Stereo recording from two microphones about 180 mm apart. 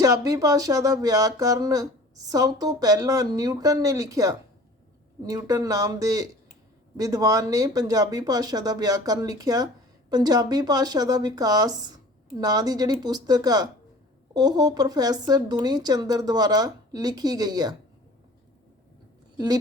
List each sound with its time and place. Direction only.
0.0 s speech: 20° right (ahead or behind)